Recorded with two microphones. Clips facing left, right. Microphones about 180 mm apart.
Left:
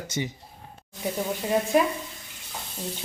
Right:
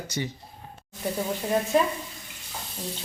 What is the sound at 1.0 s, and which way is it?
Speech, 5° left (ahead or behind).